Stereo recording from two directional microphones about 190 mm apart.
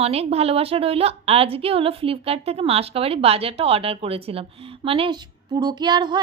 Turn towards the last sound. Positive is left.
turn(degrees=-25)  # may be behind; listen again after turning